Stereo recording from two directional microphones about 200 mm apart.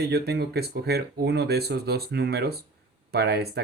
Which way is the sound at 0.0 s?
55° right (ahead or behind).